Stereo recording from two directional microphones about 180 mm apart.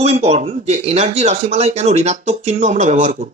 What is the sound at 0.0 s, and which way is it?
Speech, 35° right (ahead or behind).